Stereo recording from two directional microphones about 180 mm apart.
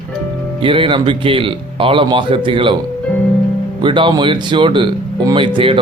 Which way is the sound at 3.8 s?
25° right (ahead or behind).